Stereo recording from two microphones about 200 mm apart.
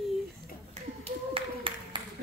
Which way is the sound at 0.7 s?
30° right (ahead or behind).